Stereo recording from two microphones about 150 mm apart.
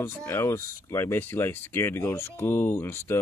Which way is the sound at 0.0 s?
15° left (ahead or behind).